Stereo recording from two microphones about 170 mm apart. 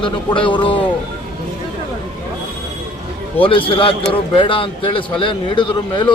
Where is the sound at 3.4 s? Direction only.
30° left (ahead or behind).